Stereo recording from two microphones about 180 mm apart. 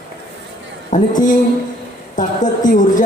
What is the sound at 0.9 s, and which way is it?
Speech, 45° left (ahead or behind).